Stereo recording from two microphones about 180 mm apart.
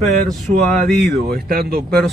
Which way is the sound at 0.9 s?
Centre (ahead or behind).